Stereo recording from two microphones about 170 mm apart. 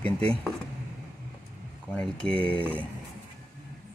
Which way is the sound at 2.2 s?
30° right (ahead or behind).